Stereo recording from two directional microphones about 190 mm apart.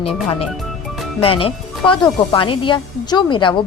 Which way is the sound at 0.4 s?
Centre (ahead or behind).